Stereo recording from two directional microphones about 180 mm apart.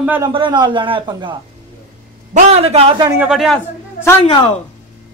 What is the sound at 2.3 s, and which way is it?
Speech, 35° right (ahead or behind).